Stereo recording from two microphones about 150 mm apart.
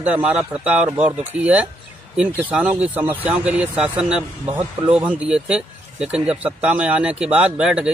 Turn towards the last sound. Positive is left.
turn(degrees=-5)  # may be behind; listen again after turning